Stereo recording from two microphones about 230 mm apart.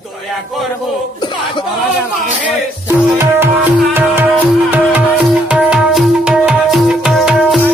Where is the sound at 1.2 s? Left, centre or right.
Centre.